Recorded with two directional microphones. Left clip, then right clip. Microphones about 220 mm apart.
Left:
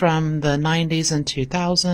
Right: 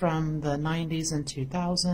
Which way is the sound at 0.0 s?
35° left (ahead or behind).